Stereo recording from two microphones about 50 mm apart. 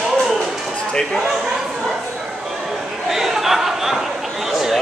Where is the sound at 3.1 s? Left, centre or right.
Centre.